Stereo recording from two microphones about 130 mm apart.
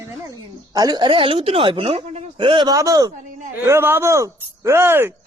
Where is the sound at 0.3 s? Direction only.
25° right (ahead or behind).